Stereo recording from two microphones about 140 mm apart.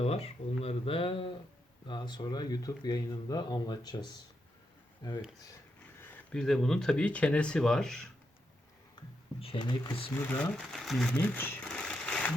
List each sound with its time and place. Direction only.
0.0 s speech: 45° left (ahead or behind); by 5.2 s 30° left (ahead or behind)
6.0 s speech: 10° left (ahead or behind)
9.0 s speech: 35° left (ahead or behind)
10.1 s speech: 15° left (ahead or behind)
10.7 s speech: centre (ahead or behind)
11.3 s a sound: 15° left (ahead or behind)